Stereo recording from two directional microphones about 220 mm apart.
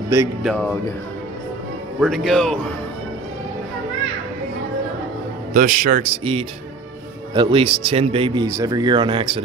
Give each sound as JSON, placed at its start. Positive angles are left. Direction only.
{"t": 0.1, "sound": "speech", "side_deg": -10}
{"t": 2.0, "sound": "speech", "side_deg": 0}
{"t": 5.5, "sound": "speech", "side_deg": -35}